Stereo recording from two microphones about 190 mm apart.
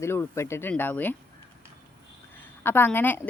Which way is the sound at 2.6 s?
10° left (ahead or behind).